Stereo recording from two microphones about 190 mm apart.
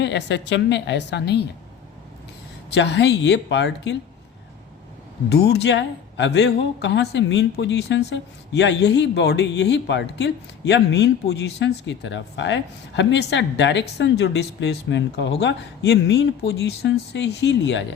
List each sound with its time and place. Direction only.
0.0 s speech: 65° left (ahead or behind)
2.6 s speech: 65° left (ahead or behind)
5.3 s speech: 60° left (ahead or behind)